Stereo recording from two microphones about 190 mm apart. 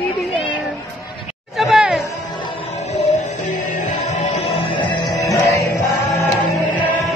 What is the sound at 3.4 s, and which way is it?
Music, 40° left (ahead or behind).